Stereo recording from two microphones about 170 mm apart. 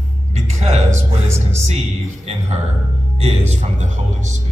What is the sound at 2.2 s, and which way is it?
Speech, 40° right (ahead or behind).